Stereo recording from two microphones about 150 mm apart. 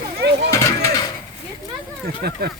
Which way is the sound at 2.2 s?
90° right.